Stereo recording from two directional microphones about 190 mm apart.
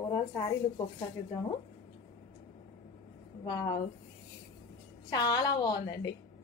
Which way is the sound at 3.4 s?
20° left (ahead or behind).